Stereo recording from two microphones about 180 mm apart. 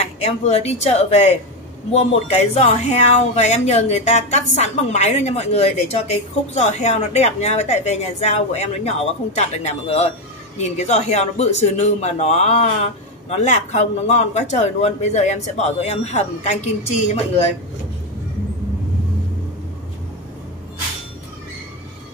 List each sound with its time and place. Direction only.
0.2 s speech: 35° left (ahead or behind)